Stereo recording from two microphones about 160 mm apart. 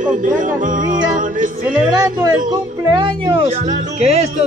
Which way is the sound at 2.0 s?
25° right (ahead or behind).